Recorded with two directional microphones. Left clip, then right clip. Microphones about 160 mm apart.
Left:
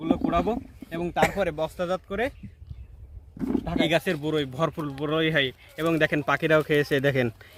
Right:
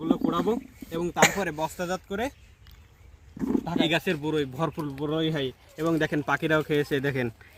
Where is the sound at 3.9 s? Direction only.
75° left (ahead or behind).